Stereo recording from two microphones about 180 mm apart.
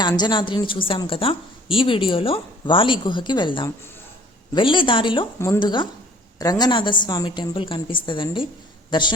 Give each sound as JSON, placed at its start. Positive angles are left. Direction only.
{"t": 0.0, "sound": "a woman's voice", "side_deg": 25}